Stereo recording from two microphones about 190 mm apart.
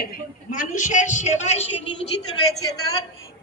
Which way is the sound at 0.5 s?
45° left (ahead or behind).